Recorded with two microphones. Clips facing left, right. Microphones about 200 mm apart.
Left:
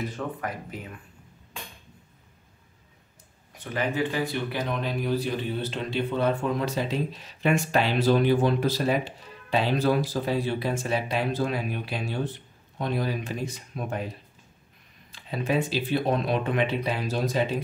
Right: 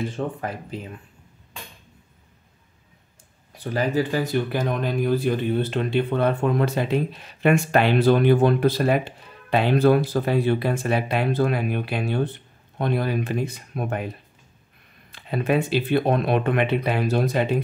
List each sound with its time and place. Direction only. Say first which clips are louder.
0.0 s speech: right 4 dB; 30° right (ahead or behind)
3.5 s speech: right 5 dB; 35° right (ahead or behind); by 17.6 s 60° right (ahead or behind)